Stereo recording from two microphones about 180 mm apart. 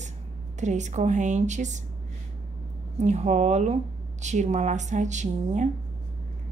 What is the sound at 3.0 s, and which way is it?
Speech, 40° right (ahead or behind).